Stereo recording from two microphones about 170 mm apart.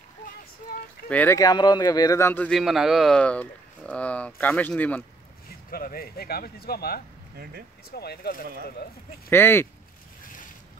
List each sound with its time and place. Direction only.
1.0 s a man's voice: 10° left (ahead or behind)
1.4 s a man's voice: 25° left (ahead or behind); by 5.0 s 10° left (ahead or behind)
5.7 s speech: 60° left (ahead or behind)
9.3 s a man's voice: 15° left (ahead or behind)
10.2 s boat: 50° left (ahead or behind)